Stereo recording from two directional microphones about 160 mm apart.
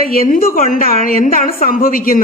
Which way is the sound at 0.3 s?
60° left (ahead or behind).